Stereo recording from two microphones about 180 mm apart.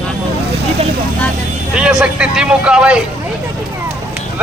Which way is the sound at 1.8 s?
5° right (ahead or behind).